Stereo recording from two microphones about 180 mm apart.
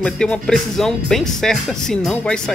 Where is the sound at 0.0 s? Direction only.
5° left (ahead or behind).